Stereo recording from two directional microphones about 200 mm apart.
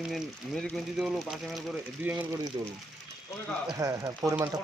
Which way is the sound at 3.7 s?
15° right (ahead or behind).